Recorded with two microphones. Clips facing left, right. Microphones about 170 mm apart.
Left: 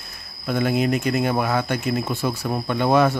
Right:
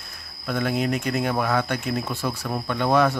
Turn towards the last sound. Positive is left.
turn(degrees=5)  # may be behind; listen again after turning